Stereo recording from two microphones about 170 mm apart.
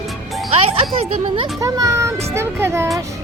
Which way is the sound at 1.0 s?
30° right (ahead or behind).